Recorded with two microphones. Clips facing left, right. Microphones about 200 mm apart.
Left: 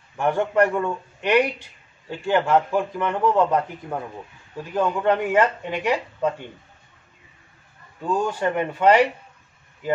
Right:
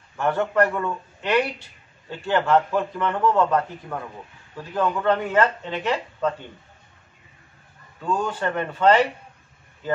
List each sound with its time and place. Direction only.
0.2 s a man's voice: 15° left (ahead or behind)
8.0 s a man's voice: 10° left (ahead or behind)